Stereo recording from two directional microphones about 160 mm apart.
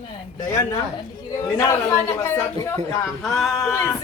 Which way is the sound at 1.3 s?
20° left (ahead or behind).